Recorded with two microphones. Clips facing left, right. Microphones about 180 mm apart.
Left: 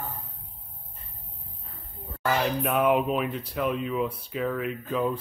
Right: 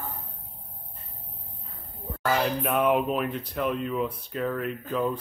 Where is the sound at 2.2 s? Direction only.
Centre (ahead or behind).